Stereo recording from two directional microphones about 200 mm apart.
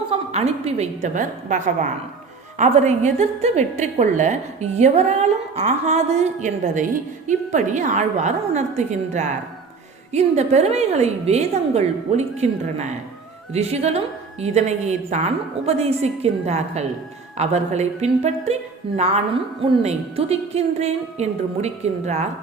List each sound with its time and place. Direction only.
0.1 s a woman's voice: 35° right (ahead or behind)
19.8 s a woman's voice: 30° right (ahead or behind)